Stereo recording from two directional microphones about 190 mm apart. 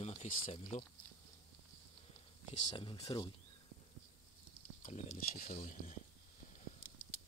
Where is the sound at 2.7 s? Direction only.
25° left (ahead or behind).